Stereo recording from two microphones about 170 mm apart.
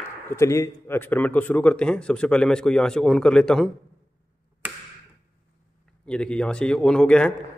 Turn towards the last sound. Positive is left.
turn(degrees=5)  # may be behind; listen again after turning